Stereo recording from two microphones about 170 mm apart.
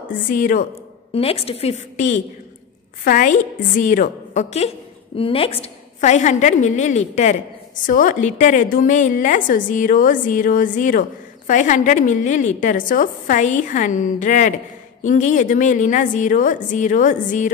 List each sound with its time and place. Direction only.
0.3 s a woman's voice: 50° left (ahead or behind)
1.1 s a woman's voice: 35° left (ahead or behind)